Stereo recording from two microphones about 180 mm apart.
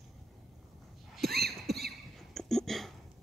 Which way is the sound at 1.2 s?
60° right (ahead or behind).